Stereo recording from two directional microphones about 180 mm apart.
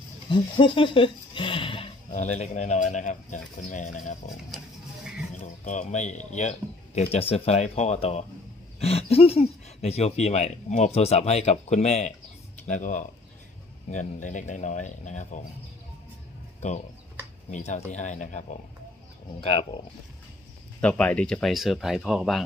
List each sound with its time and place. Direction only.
0.3 s speech: 30° left (ahead or behind)
17.5 s speech: 40° left (ahead or behind)
20.8 s speech: 5° left (ahead or behind)